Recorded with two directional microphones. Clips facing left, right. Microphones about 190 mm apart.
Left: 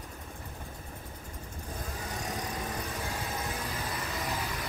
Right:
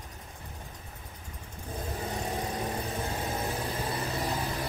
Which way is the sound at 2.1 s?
25° right (ahead or behind).